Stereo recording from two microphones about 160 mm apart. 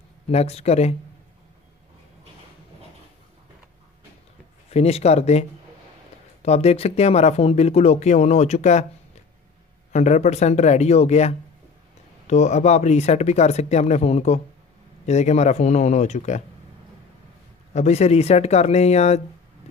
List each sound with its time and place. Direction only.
0.3 s speech: 40° left (ahead or behind)
4.6 s speech: 40° left (ahead or behind)
9.9 s speech: 45° left (ahead or behind)
17.7 s speech: 45° left (ahead or behind)